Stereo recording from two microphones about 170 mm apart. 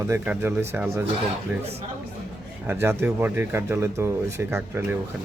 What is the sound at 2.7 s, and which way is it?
A man's voice, 15° right (ahead or behind).